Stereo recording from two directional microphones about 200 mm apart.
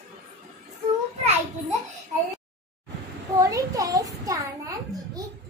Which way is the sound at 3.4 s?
15° right (ahead or behind).